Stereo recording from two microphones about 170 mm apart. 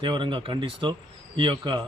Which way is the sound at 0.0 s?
30° right (ahead or behind).